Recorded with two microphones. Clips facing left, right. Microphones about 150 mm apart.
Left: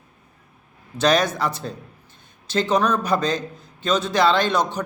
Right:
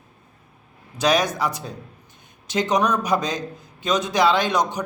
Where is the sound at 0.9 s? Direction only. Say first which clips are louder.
Left 1 dB; 10° right (ahead or behind).